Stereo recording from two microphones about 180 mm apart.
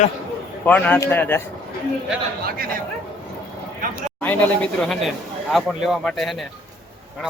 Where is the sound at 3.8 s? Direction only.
50° right (ahead or behind).